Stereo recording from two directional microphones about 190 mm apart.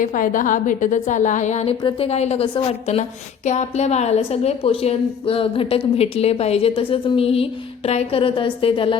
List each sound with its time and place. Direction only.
0.0 s a woman's voice: 45° left (ahead or behind); by 9.0 s 25° left (ahead or behind)